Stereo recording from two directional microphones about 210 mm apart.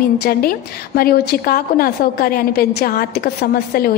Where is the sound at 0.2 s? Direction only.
45° left (ahead or behind).